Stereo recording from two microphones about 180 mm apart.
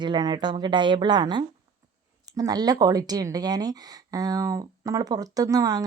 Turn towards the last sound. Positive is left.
turn(degrees=-20)  # may be behind; listen again after turning